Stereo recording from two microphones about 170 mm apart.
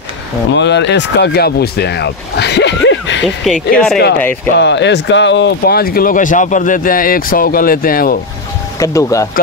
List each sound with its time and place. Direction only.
0.6 s speech: 90° left
3.7 s speech: 5° left (ahead or behind)
4.6 s speech: 90° left; by 8.2 s 60° left (ahead or behind)
8.7 s speech: 20° left (ahead or behind)